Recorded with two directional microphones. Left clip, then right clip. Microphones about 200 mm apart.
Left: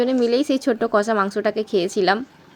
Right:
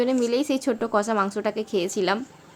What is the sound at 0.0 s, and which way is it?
Speech, 15° left (ahead or behind).